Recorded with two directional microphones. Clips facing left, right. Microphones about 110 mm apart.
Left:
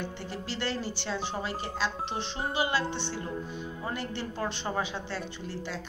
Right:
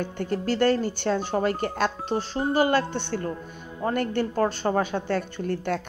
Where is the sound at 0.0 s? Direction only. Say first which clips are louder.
Right 9 dB; 50° right (ahead or behind).